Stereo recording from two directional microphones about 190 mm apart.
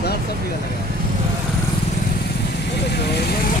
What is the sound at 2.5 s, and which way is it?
Speech, 60° left (ahead or behind).